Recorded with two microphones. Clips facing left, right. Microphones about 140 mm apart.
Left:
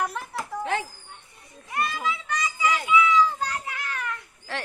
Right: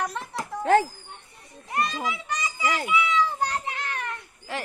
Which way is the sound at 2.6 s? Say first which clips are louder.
Left 2 dB; 35° right (ahead or behind).